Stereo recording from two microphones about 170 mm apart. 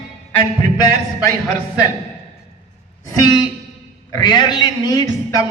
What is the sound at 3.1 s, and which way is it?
A man's voice, 20° left (ahead or behind).